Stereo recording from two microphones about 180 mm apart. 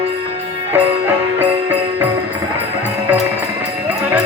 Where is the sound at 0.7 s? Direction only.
10° right (ahead or behind).